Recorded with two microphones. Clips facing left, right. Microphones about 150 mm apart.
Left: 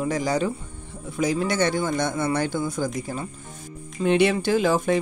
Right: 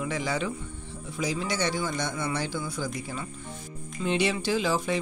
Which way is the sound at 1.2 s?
50° left (ahead or behind).